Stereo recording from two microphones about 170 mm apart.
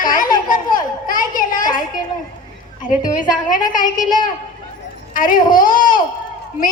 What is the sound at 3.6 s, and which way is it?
Speech, 25° left (ahead or behind).